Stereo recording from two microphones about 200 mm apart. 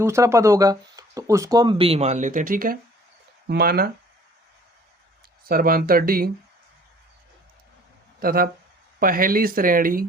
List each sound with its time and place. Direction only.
0.0 s speech: 15° right (ahead or behind); by 3.9 s 50° right (ahead or behind)
5.5 s speech: 45° right (ahead or behind)
8.2 s speech: 45° right (ahead or behind)